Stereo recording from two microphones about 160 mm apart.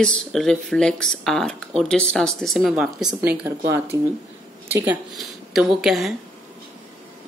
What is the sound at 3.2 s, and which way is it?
Speech, 15° right (ahead or behind).